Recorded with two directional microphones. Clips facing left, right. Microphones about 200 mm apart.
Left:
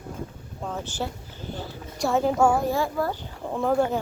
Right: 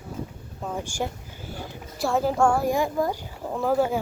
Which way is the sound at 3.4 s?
5° right (ahead or behind).